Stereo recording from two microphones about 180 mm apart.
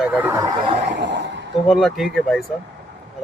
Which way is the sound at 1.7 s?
Centre (ahead or behind).